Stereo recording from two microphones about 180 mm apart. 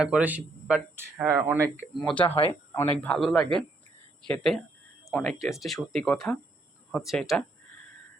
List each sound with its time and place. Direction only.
0.0 s speech: 5° right (ahead or behind)
1.8 s speech: centre (ahead or behind)
2.2 s speech: 30° left (ahead or behind)
2.5 s speech: 10° left (ahead or behind)